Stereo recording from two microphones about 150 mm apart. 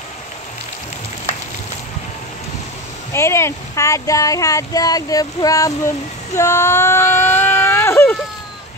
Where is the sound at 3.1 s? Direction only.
20° left (ahead or behind).